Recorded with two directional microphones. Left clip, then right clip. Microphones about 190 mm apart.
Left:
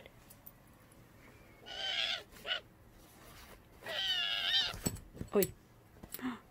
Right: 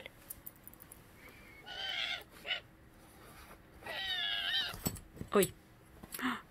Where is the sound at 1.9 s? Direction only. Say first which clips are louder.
Left 3 dB; 45° left (ahead or behind).